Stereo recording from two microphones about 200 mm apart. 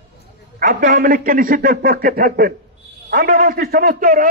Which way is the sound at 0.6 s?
40° right (ahead or behind).